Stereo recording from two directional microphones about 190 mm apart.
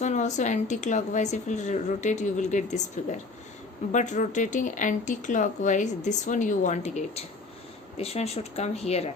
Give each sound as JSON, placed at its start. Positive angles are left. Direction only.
{"t": 0.0, "sound": "speech", "side_deg": 40}